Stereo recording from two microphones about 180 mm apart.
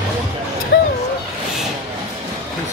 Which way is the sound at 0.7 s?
75° left (ahead or behind).